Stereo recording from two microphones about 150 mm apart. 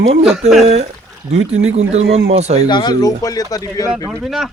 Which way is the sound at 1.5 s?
45° right (ahead or behind).